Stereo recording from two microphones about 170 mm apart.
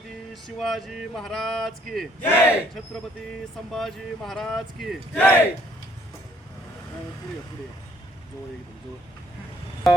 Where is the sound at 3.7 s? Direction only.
Centre (ahead or behind).